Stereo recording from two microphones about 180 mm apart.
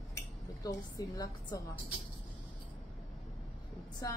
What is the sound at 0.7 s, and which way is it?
Speech, 20° left (ahead or behind).